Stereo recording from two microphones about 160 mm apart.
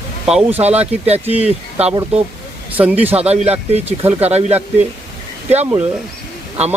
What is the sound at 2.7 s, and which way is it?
Speech, 10° right (ahead or behind).